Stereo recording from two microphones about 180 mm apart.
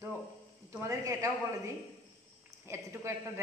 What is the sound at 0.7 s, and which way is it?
A woman's voice, 15° right (ahead or behind).